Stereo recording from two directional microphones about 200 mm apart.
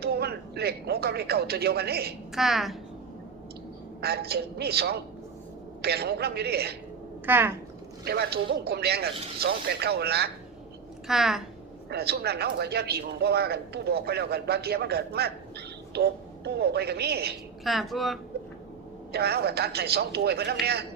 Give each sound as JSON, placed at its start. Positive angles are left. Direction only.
{"t": 0.0, "sound": "speech", "side_deg": -55}
{"t": 2.3, "sound": "speech", "side_deg": 0}
{"t": 4.0, "sound": "speech", "side_deg": -50}
{"t": 7.3, "sound": "speech", "side_deg": -10}
{"t": 8.0, "sound": "speech", "side_deg": -55}
{"t": 11.1, "sound": "speech", "side_deg": 0}
{"t": 11.9, "sound": "speech", "side_deg": -55}
{"t": 17.6, "sound": "speech", "side_deg": 0}
{"t": 19.1, "sound": "speech", "side_deg": -55}